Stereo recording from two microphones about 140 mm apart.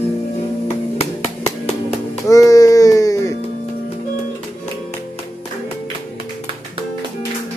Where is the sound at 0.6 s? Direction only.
45° left (ahead or behind).